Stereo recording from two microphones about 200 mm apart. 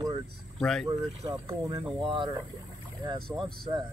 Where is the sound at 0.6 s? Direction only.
Centre (ahead or behind).